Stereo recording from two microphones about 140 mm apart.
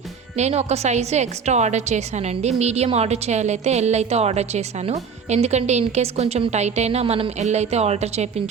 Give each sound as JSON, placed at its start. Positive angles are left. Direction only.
{"t": 0.3, "sound": "a woman's voice", "side_deg": -50}